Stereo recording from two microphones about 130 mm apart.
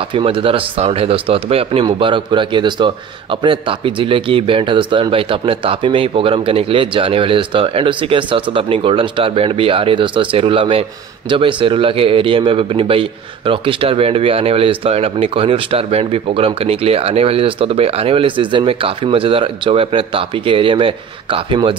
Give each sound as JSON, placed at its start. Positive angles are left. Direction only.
{"t": 0.1, "sound": "a man's voice", "side_deg": -45}